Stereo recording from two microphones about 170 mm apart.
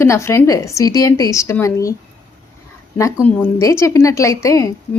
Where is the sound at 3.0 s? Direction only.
20° left (ahead or behind).